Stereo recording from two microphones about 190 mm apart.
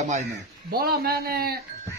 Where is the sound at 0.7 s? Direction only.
50° right (ahead or behind).